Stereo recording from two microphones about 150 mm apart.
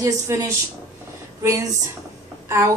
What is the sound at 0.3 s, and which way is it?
A woman's voice, 20° right (ahead or behind).